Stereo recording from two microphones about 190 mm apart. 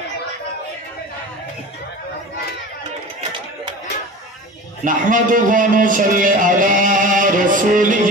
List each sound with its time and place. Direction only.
4.8 s a man's voice: 45° right (ahead or behind)